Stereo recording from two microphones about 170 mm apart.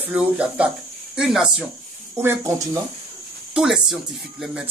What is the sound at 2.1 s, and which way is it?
Speech, 15° right (ahead or behind).